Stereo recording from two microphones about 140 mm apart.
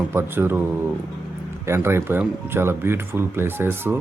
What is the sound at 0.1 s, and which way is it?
Speech, 15° right (ahead or behind).